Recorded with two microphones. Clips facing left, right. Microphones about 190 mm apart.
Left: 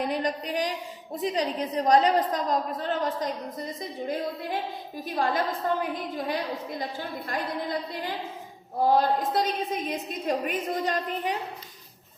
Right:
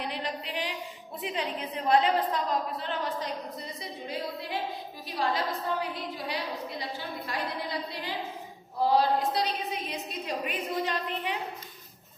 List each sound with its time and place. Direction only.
0.0 s a woman's voice: 45° left (ahead or behind)